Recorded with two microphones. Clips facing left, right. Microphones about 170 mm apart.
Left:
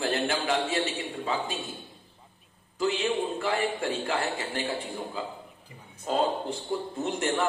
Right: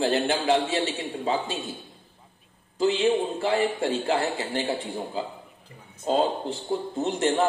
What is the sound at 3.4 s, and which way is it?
A man's voice, 30° right (ahead or behind).